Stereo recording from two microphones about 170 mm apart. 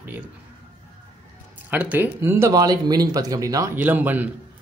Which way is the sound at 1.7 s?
10° right (ahead or behind).